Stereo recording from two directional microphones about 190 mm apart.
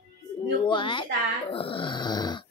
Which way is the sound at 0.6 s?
25° left (ahead or behind).